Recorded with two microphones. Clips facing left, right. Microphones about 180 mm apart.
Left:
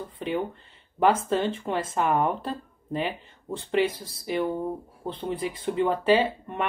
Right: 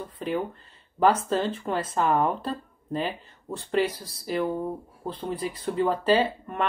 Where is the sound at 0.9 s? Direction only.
25° left (ahead or behind).